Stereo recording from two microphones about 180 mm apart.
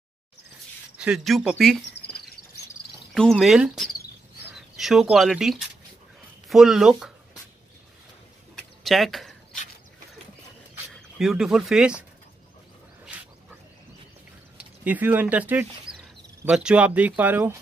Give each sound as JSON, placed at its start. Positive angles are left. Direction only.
{"t": 0.9, "sound": "speech", "side_deg": -5}
{"t": 1.9, "sound": "cricket", "side_deg": 60}
{"t": 3.2, "sound": "speech", "side_deg": 0}
{"t": 8.5, "sound": "a sound", "side_deg": 0}
{"t": 10.9, "sound": "speech", "side_deg": 0}
{"t": 14.9, "sound": "speech", "side_deg": -10}